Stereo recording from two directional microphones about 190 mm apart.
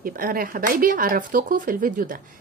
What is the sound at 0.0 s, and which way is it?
A woman's voice, 50° right (ahead or behind).